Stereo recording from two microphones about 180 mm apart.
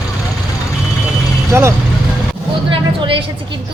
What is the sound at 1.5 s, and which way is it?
Speech, 15° right (ahead or behind).